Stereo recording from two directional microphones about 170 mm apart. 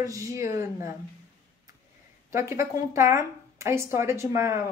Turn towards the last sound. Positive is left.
turn(degrees=-15)  # may be behind; listen again after turning